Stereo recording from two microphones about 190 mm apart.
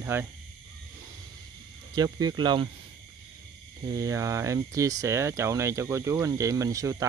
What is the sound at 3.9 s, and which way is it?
Speech, 20° right (ahead or behind).